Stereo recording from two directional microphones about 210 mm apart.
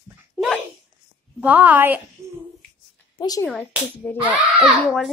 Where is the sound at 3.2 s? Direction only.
20° left (ahead or behind).